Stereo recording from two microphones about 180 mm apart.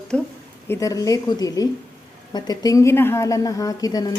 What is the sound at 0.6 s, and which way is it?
A woman's voice, 15° left (ahead or behind).